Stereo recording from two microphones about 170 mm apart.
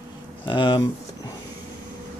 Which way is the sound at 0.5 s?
25° left (ahead or behind).